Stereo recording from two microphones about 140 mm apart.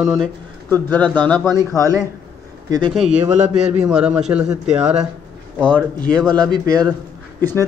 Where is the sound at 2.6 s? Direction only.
30° right (ahead or behind).